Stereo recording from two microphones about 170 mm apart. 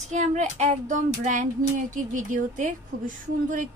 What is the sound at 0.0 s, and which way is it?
A woman's voice, 45° right (ahead or behind).